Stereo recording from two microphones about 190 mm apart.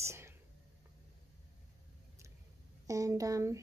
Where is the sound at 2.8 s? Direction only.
15° right (ahead or behind).